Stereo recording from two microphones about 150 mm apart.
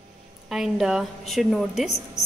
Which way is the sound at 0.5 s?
5° right (ahead or behind).